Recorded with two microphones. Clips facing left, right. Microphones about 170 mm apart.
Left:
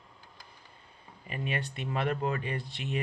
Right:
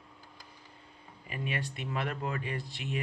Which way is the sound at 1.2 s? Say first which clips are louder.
Left 2 dB; 30° left (ahead or behind).